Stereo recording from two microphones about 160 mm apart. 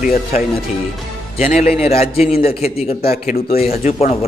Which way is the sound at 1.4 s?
50° left (ahead or behind).